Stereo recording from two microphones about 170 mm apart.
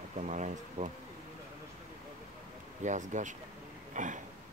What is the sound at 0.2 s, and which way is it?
Speech, 45° right (ahead or behind).